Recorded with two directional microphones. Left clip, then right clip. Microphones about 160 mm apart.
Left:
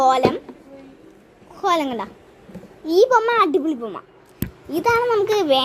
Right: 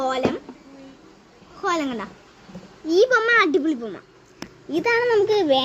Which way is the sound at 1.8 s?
90° right.